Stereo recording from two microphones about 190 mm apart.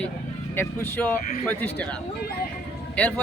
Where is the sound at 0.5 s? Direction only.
10° left (ahead or behind).